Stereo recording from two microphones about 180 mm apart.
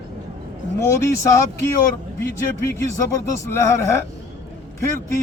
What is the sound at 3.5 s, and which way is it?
Speech, 15° left (ahead or behind).